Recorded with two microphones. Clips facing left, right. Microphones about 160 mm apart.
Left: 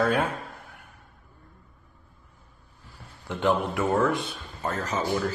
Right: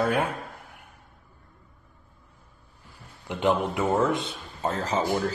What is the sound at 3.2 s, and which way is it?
A man's voice, 15° right (ahead or behind).